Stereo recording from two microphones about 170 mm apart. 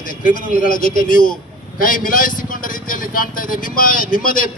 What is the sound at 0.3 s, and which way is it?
A man's voice, 55° left (ahead or behind).